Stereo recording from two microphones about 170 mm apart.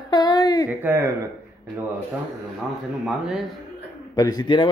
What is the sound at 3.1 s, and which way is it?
Speech, centre (ahead or behind).